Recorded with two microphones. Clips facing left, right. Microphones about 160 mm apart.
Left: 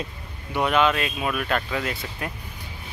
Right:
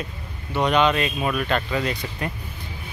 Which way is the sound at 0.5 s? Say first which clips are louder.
Right 2 dB; 5° left (ahead or behind).